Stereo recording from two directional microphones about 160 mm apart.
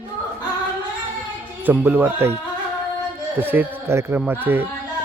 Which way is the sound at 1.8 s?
15° right (ahead or behind).